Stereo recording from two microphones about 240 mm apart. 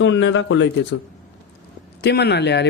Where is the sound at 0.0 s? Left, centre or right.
Left.